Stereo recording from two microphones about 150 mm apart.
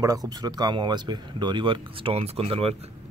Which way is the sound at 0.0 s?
25° right (ahead or behind).